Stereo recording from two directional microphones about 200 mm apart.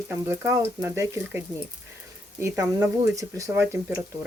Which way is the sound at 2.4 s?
10° right (ahead or behind).